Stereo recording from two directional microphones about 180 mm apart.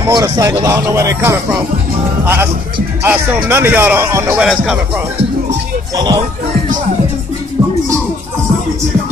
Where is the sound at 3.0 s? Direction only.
15° right (ahead or behind).